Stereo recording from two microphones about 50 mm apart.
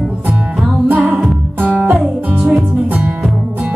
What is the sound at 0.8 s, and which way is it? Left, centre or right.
Music, right.